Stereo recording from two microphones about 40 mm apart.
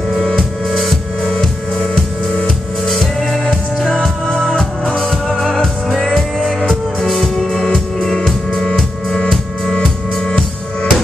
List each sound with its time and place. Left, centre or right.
0.4 s music: centre
2.9 s music: centre
4.5 s music: left
6.0 s music: centre
7.5 s music: centre
10.2 s music: left